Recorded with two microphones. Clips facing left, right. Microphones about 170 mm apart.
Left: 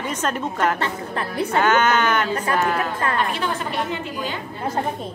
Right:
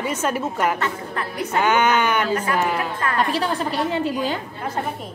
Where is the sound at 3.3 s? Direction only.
35° right (ahead or behind).